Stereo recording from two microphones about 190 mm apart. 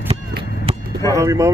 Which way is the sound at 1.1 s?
15° right (ahead or behind).